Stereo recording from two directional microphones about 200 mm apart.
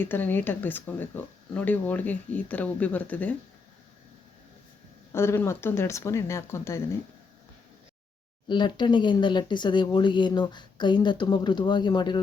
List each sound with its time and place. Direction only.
0.0 s speech: 10° left (ahead or behind)
5.1 s speech: 10° left (ahead or behind)
8.4 s speech: 25° left (ahead or behind)